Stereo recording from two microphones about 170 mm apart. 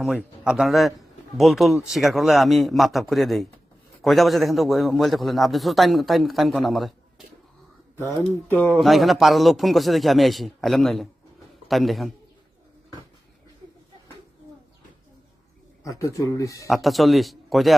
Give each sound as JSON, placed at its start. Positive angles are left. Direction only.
{"t": 0.0, "sound": "a man's voice", "side_deg": -5}
{"t": 7.9, "sound": "speech", "side_deg": 10}
{"t": 8.7, "sound": "a man's voice", "side_deg": 0}
{"t": 15.8, "sound": "speech", "side_deg": 20}
{"t": 16.6, "sound": "a man's voice", "side_deg": 0}